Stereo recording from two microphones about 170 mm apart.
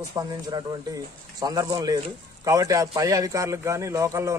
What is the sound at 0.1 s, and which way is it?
A man's voice, 25° right (ahead or behind).